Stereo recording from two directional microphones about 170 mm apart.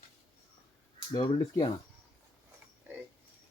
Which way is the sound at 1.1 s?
25° left (ahead or behind).